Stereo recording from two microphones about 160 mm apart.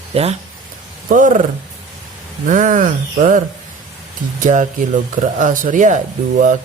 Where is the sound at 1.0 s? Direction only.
55° right (ahead or behind).